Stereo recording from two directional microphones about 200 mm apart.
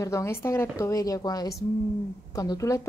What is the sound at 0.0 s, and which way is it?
A woman's voice, 15° left (ahead or behind).